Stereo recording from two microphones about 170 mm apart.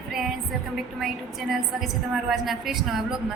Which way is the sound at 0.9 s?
Centre (ahead or behind).